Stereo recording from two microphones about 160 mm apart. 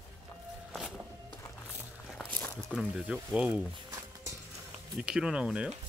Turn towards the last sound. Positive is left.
turn(degrees=-5)  # may be behind; listen again after turning